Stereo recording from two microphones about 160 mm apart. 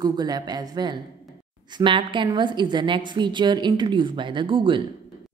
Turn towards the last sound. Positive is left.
turn(degrees=-30)  # may be behind; listen again after turning